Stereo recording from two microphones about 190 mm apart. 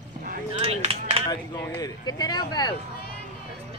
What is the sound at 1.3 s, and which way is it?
Speech, 20° left (ahead or behind).